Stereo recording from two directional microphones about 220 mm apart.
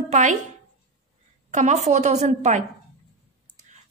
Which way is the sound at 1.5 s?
30° right (ahead or behind).